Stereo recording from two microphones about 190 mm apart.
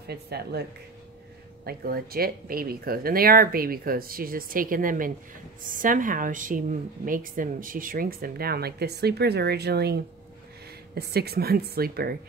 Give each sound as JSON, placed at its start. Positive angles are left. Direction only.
{"t": 0.0, "sound": "speech", "side_deg": -60}
{"t": 1.7, "sound": "a woman's voice", "side_deg": -55}
{"t": 11.0, "sound": "speech", "side_deg": -55}